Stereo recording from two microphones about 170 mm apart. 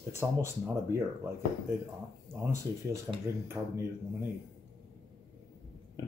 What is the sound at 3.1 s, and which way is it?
Speech, 20° right (ahead or behind).